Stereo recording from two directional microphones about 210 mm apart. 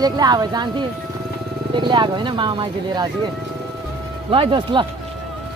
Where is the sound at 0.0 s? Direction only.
20° right (ahead or behind).